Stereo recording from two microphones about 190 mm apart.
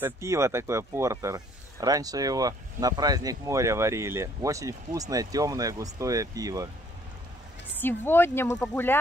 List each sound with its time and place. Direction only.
0.0 s speech: 15° right (ahead or behind)
7.8 s speech: 10° left (ahead or behind)